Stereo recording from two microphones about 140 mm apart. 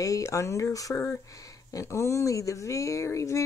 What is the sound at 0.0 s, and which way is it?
Speech, 25° left (ahead or behind).